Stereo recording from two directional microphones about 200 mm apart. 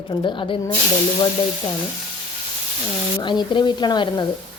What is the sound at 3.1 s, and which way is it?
A woman's voice, 20° left (ahead or behind).